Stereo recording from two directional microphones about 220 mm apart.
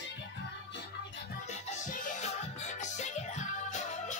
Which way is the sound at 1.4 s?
35° left (ahead or behind).